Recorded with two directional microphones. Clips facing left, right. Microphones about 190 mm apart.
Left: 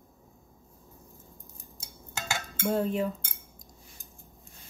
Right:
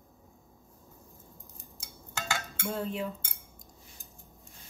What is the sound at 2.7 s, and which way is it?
Speech, 45° left (ahead or behind).